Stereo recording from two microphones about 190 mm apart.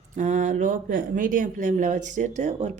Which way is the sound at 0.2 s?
40° right (ahead or behind).